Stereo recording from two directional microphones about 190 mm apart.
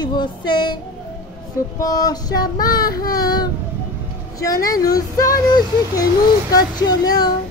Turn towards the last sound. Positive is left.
turn(degrees=20)  # may be behind; listen again after turning